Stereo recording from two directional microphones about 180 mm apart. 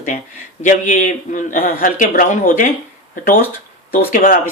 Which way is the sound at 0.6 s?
45° left (ahead or behind).